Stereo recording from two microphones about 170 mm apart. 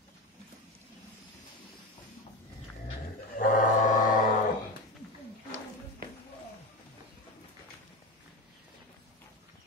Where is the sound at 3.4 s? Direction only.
50° left (ahead or behind).